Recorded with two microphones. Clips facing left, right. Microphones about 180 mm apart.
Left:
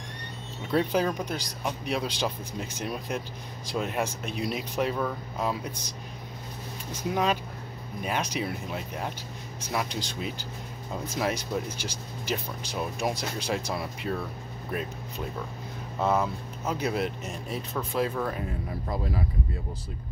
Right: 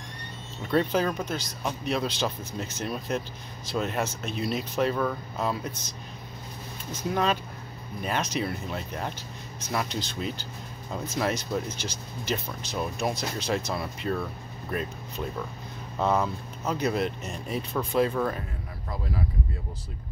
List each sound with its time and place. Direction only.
0.7 s speech: 10° left (ahead or behind)